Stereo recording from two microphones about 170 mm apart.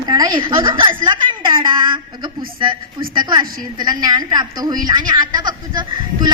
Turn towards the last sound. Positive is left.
turn(degrees=-25)  # may be behind; listen again after turning